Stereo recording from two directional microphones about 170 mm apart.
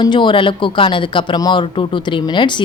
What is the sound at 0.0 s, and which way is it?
A woman's voice, 25° left (ahead or behind).